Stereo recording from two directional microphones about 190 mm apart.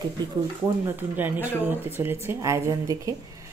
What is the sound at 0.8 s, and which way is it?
Speech, 10° right (ahead or behind).